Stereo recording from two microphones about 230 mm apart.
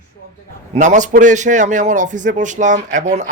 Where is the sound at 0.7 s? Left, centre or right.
Right.